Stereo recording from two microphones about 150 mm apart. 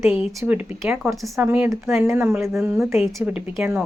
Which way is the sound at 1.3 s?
15° right (ahead or behind).